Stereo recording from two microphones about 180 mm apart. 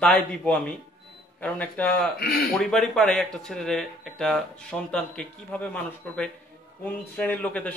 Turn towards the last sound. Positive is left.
turn(degrees=10)  # may be behind; listen again after turning